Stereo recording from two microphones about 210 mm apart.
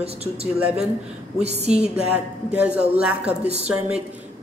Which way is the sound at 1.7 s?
5° right (ahead or behind).